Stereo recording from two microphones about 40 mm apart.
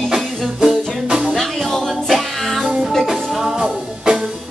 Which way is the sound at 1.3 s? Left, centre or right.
Centre.